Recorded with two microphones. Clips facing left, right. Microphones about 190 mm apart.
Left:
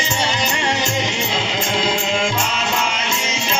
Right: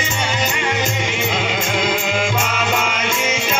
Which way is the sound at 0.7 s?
55° right (ahead or behind).